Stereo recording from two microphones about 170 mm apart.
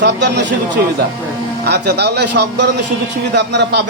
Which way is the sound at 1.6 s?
75° right (ahead or behind).